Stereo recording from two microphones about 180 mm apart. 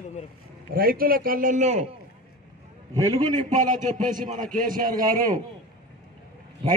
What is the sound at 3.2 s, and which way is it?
A man's voice, 45° right (ahead or behind).